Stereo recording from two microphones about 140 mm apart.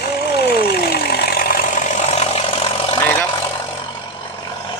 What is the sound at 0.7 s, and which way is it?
Vehicle, 90° left.